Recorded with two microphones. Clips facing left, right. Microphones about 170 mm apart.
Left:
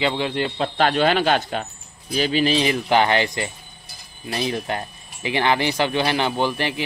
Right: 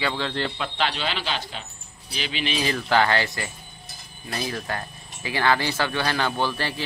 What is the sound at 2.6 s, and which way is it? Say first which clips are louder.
Speech: left 3 dB; 20° left (ahead or behind).